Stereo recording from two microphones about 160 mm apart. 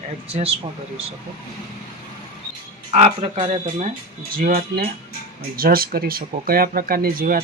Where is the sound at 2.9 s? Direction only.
35° right (ahead or behind).